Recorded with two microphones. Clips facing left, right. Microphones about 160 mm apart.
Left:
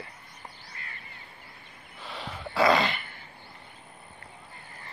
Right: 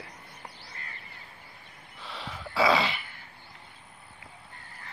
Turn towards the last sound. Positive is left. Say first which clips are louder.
# left 2 dB
turn(degrees=0)  # may be behind; listen again after turning